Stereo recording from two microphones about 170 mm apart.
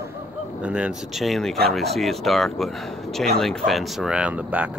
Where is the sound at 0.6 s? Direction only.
5° right (ahead or behind).